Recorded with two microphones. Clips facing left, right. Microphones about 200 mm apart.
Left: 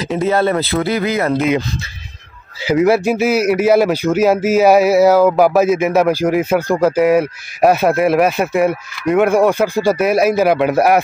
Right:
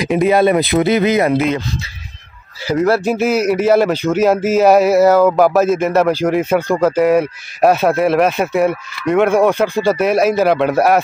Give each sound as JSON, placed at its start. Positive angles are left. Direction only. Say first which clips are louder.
{"t": 0.0, "sound": "speech", "louder": "right 3 dB", "side_deg": -15}
{"t": 2.7, "sound": "a man's voice", "louder": "left 2 dB", "side_deg": 10}